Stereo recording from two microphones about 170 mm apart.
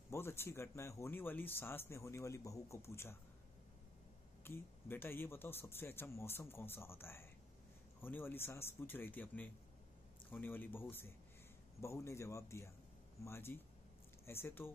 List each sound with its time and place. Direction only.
0.1 s speech: 15° left (ahead or behind)
4.5 s speech: 15° left (ahead or behind)